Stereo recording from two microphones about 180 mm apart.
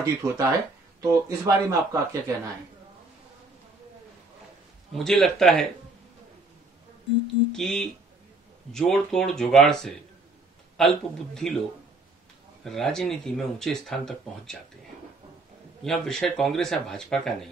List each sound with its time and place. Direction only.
0.0 s speech: 15° right (ahead or behind)
4.9 s speech: centre (ahead or behind)
7.5 s speech: centre (ahead or behind)
12.6 s speech: centre (ahead or behind)
15.8 s speech: 5° left (ahead or behind)